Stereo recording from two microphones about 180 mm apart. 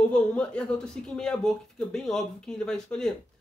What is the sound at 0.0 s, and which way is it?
Speech, 5° left (ahead or behind).